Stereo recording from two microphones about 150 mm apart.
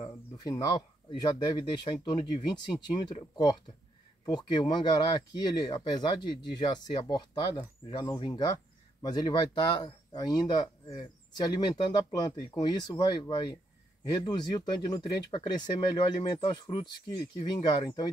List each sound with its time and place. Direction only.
0.0 s speech: 25° left (ahead or behind)
4.3 s speech: 30° left (ahead or behind)